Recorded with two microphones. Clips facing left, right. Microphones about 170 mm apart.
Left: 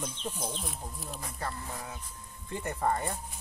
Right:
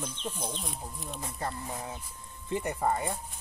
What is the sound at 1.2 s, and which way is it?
Speech, 25° right (ahead or behind).